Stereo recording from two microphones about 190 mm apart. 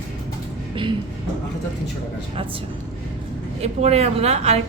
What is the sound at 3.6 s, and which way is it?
A woman's voice, 35° right (ahead or behind).